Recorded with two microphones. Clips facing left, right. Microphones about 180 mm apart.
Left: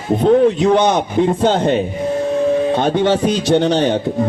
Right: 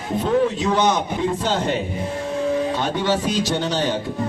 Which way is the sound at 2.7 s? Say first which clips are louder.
Left 7 dB; 55° left (ahead or behind).